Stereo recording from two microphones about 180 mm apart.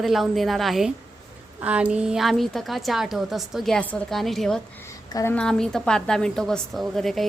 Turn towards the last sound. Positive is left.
turn(degrees=0)  # may be behind; listen again after turning